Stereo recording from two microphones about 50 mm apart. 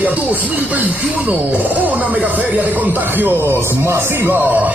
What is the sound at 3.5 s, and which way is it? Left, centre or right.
A man's voice, right.